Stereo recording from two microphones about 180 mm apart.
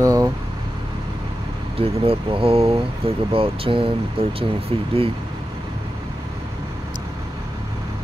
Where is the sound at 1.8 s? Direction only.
30° right (ahead or behind).